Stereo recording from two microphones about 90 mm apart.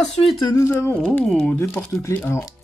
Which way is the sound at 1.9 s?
25° left (ahead or behind).